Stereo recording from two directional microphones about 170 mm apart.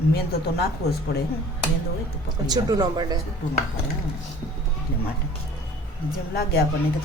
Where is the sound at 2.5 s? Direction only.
20° right (ahead or behind).